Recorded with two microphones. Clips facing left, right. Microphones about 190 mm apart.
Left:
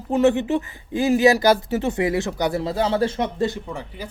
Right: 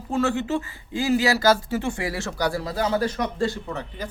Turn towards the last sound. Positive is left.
turn(degrees=10)  # may be behind; listen again after turning